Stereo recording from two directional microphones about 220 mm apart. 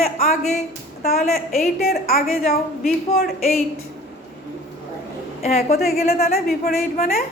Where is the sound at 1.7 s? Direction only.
45° left (ahead or behind).